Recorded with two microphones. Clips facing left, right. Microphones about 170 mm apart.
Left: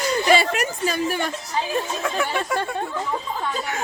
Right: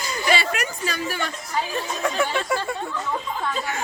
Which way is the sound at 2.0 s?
Centre (ahead or behind).